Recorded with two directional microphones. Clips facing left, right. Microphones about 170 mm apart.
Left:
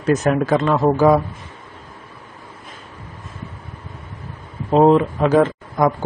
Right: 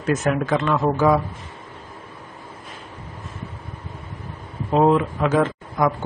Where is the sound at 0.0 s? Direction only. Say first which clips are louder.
Left 4 dB; 35° left (ahead or behind).